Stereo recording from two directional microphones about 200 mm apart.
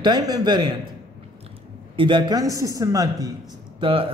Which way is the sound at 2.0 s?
25° right (ahead or behind).